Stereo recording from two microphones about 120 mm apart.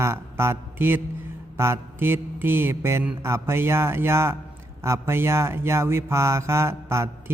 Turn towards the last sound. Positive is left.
turn(degrees=-20)  # may be behind; listen again after turning